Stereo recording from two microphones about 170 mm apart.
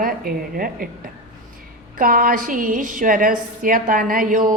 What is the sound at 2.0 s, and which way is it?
A woman's voice, 55° right (ahead or behind).